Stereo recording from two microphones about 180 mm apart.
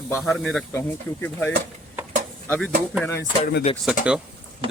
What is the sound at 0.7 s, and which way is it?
Speech, 10° left (ahead or behind).